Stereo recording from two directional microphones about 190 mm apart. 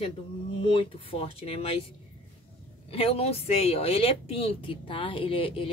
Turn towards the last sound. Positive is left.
turn(degrees=30)  # may be behind; listen again after turning